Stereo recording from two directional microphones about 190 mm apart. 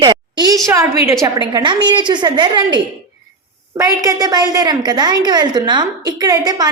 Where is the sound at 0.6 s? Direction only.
15° right (ahead or behind).